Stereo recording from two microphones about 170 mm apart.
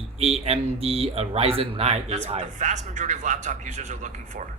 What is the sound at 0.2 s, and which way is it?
Speech, 35° right (ahead or behind).